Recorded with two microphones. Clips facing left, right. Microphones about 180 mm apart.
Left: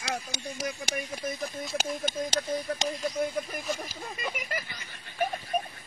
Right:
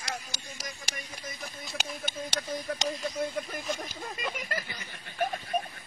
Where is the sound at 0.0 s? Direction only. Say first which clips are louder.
Left 5 dB; 65° left (ahead or behind).